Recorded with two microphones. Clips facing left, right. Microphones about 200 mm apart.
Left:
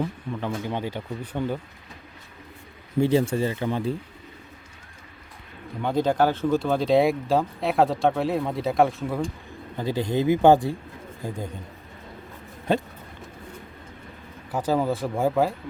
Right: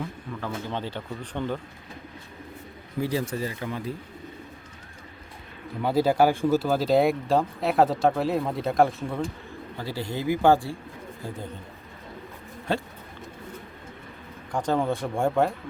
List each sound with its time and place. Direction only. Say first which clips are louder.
0.3 s speech: left 3 dB; 20° left (ahead or behind)
3.0 s speech: left 6 dB; 25° left (ahead or behind)
5.8 s speech: right 1 dB; 5° right (ahead or behind)
9.7 s speech: left 7 dB; 20° left (ahead or behind)
12.7 s speech: left 4 dB; 15° left (ahead or behind)
14.5 s speech: left 1 dB; 5° left (ahead or behind)